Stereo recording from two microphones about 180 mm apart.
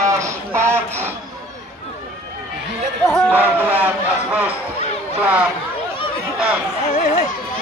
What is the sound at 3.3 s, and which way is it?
Speech, 10° right (ahead or behind).